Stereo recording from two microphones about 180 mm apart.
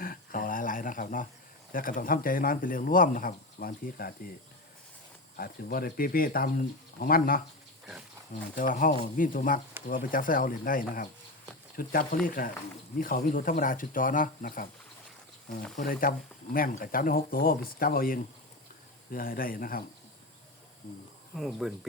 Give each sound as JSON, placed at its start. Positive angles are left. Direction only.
{"t": 0.0, "sound": "a sound", "side_deg": 50}
{"t": 1.7, "sound": "speech", "side_deg": 50}
{"t": 5.4, "sound": "speech", "side_deg": 55}
{"t": 8.5, "sound": "speech", "side_deg": 50}
{"t": 15.8, "sound": "speech", "side_deg": 50}
{"t": 21.3, "sound": "speech", "side_deg": 0}